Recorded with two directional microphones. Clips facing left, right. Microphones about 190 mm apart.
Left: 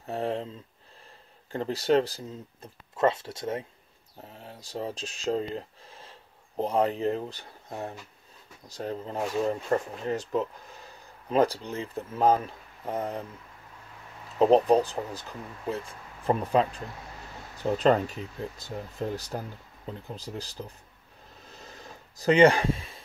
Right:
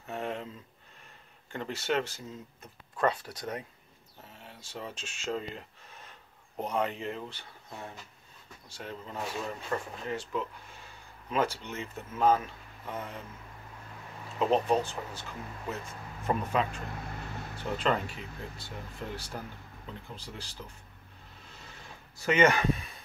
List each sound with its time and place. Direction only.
0.0 s a sound: 35° left (ahead or behind)
1.5 s speech: 35° left (ahead or behind)
3.0 s speech: 25° left (ahead or behind)
4.2 s speech: 35° left (ahead or behind)
14.4 s speech: 35° left (ahead or behind)
21.5 s a sound: 40° left (ahead or behind)